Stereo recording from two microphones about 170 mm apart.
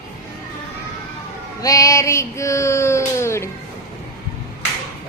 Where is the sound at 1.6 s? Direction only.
20° left (ahead or behind).